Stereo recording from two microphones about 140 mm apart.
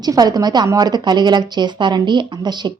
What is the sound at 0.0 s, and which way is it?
A woman's voice, 30° right (ahead or behind).